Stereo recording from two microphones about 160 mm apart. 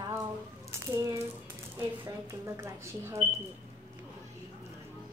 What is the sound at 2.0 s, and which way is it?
Speech, 20° right (ahead or behind).